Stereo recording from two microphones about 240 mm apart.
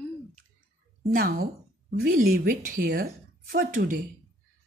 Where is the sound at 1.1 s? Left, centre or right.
Right.